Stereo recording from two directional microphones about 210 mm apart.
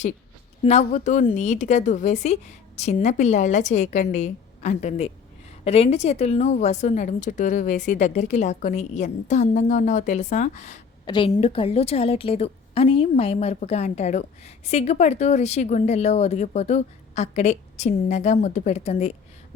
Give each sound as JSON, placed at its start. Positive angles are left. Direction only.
{"t": 0.6, "sound": "a woman's voice", "side_deg": 30}
{"t": 11.0, "sound": "a woman's voice", "side_deg": 20}